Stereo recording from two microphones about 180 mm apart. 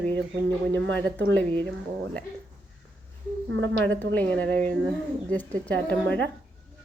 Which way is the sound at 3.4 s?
90° right.